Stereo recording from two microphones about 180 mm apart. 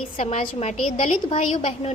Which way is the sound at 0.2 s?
40° left (ahead or behind).